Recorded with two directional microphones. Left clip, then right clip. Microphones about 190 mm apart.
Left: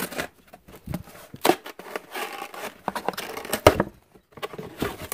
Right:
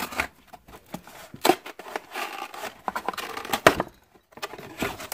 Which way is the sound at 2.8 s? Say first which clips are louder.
Left 1 dB; 15° left (ahead or behind).